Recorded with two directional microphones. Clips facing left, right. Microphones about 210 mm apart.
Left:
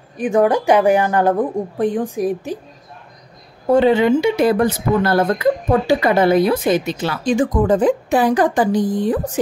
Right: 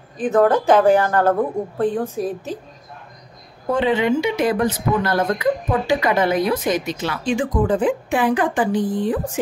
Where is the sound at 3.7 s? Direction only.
40° left (ahead or behind).